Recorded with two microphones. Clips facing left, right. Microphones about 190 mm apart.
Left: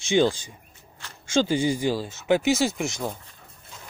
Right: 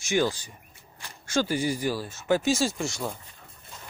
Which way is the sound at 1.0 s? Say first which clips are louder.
Even; 15° right (ahead or behind).